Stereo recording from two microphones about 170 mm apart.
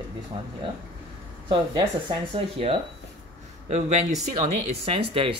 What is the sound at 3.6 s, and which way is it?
Speech, 40° right (ahead or behind).